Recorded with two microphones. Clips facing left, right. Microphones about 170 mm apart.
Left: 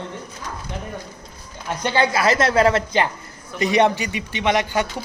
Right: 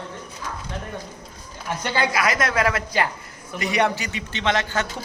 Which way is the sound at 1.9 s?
25° left (ahead or behind).